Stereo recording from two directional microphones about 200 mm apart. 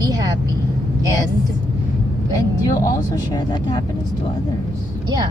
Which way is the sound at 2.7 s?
15° left (ahead or behind).